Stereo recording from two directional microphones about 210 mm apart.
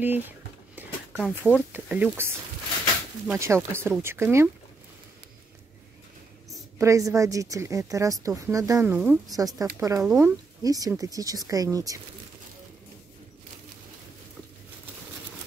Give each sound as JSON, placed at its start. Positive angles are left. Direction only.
{"t": 0.0, "sound": "a woman's voice", "side_deg": -10}
{"t": 0.8, "sound": "a sound", "side_deg": -10}
{"t": 1.1, "sound": "speech", "side_deg": 5}
{"t": 1.7, "sound": "a woman's voice", "side_deg": -10}
{"t": 3.3, "sound": "a woman's voice", "side_deg": -15}
{"t": 6.8, "sound": "a woman's voice", "side_deg": -15}